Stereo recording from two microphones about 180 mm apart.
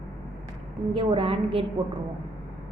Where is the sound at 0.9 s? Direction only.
30° right (ahead or behind).